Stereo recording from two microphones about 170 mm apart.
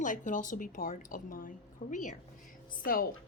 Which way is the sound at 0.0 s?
50° left (ahead or behind).